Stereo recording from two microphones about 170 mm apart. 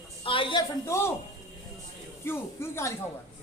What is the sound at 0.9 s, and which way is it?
Speech, 15° left (ahead or behind).